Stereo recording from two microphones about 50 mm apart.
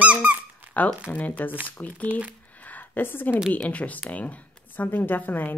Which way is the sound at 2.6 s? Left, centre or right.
Left.